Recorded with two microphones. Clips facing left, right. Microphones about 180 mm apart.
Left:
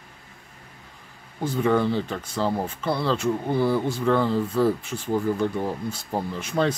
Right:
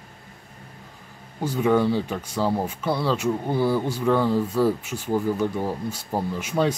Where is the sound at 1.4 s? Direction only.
10° right (ahead or behind).